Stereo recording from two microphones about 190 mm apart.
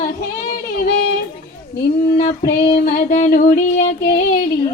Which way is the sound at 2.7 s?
45° left (ahead or behind).